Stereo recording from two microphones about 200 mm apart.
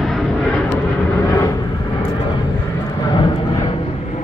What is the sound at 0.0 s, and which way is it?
Vehicle, centre (ahead or behind).